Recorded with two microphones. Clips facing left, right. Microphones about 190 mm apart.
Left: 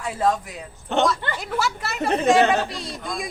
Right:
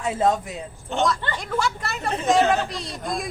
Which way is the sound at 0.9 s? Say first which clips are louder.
Left 3 dB; 65° left (ahead or behind).